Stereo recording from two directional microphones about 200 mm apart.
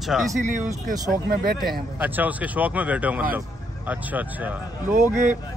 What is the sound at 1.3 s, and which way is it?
Speech, 50° right (ahead or behind).